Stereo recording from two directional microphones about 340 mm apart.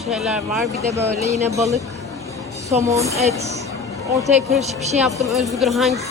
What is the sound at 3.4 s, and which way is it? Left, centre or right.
Speech, centre.